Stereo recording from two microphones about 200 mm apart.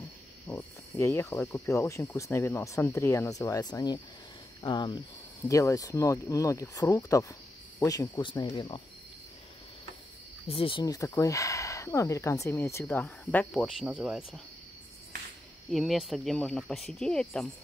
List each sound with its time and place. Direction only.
0.5 s cricket: 10° left (ahead or behind)
1.5 s speech: 15° left (ahead or behind)
10.5 s speech: 25° left (ahead or behind); by 14.4 s 5° right (ahead or behind)
15.7 s speech: centre (ahead or behind)